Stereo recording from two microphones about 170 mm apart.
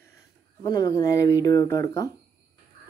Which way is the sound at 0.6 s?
20° left (ahead or behind).